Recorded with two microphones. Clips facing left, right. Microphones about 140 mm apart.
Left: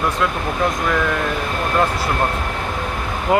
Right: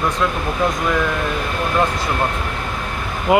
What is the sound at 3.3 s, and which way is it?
Speech, 5° right (ahead or behind).